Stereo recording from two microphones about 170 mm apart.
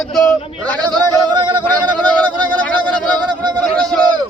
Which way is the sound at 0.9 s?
25° right (ahead or behind).